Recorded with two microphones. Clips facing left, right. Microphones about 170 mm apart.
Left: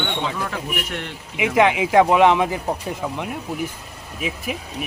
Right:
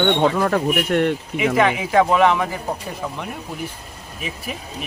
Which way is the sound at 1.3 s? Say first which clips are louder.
Left 4 dB; 15° left (ahead or behind).